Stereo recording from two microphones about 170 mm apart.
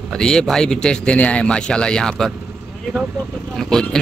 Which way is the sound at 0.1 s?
5° left (ahead or behind).